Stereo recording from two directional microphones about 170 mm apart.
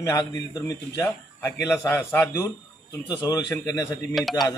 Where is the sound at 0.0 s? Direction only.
20° left (ahead or behind).